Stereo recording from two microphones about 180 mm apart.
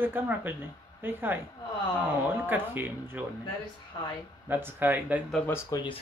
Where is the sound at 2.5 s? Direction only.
10° right (ahead or behind).